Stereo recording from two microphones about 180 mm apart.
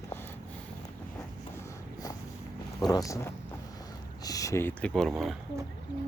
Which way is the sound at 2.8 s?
20° left (ahead or behind).